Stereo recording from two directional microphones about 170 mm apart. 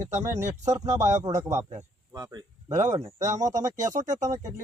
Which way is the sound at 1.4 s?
15° right (ahead or behind).